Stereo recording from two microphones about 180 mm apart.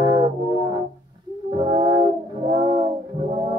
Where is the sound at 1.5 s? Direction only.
25° right (ahead or behind).